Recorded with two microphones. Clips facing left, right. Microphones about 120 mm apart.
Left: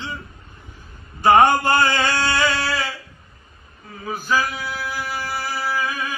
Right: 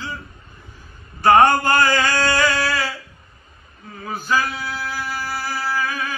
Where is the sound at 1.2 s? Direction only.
15° left (ahead or behind).